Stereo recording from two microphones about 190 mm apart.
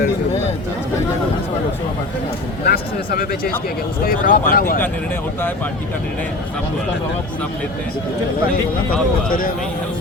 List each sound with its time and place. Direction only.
2.6 s speech: 50° left (ahead or behind)